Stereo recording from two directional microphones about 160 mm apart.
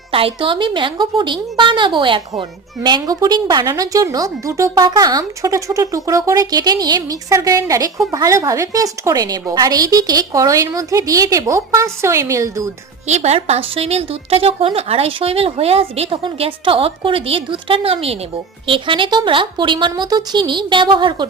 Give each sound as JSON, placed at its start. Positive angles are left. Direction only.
{"t": 0.1, "sound": "a woman's voice", "side_deg": -35}
{"t": 13.1, "sound": "a woman's voice", "side_deg": -45}